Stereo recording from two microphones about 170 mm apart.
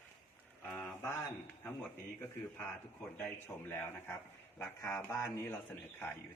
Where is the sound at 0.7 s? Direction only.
10° left (ahead or behind).